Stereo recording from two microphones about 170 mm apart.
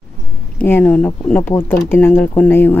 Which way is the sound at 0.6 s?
10° left (ahead or behind).